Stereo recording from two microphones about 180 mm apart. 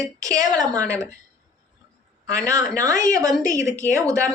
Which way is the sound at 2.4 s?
15° right (ahead or behind).